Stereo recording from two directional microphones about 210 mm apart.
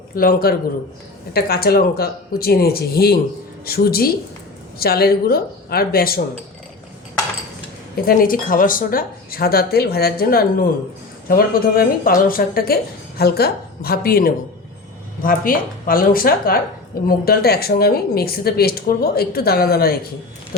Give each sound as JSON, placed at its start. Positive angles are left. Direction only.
{"t": 0.2, "sound": "speech", "side_deg": 45}
{"t": 7.9, "sound": "speech", "side_deg": 45}